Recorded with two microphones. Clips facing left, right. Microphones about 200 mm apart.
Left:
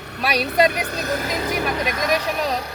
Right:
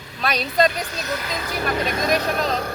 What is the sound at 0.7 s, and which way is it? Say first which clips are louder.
Speech: left 3 dB; 60° left (ahead or behind).